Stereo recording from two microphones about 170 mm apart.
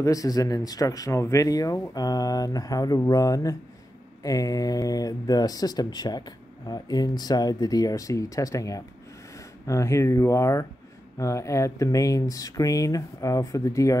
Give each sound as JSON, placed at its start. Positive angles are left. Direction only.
{"t": 0.0, "sound": "speech", "side_deg": 20}